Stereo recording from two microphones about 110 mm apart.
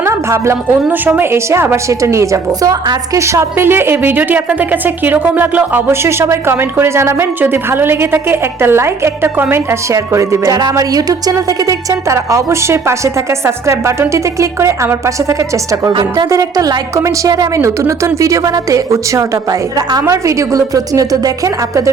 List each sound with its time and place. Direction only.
0.0 s a woman's voice: 25° right (ahead or behind)
15.9 s a woman's voice: 45° right (ahead or behind)
16.3 s a woman's voice: 35° right (ahead or behind)